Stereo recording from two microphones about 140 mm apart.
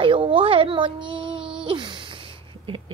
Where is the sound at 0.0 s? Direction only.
40° right (ahead or behind).